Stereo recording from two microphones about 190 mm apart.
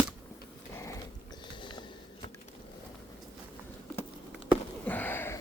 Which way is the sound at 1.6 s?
25° left (ahead or behind).